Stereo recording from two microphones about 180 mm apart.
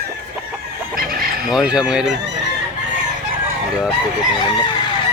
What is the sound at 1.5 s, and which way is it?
Speech, 5° right (ahead or behind).